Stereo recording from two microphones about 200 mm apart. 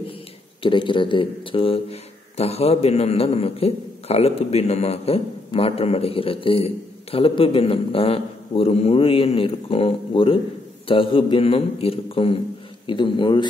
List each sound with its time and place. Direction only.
0.6 s speech: 25° left (ahead or behind)